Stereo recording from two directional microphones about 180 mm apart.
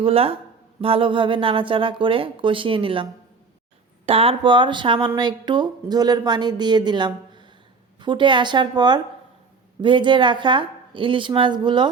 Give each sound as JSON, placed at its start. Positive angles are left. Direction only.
{"t": 0.0, "sound": "speech", "side_deg": -30}